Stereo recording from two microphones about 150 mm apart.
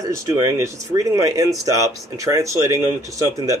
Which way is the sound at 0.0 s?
20° right (ahead or behind).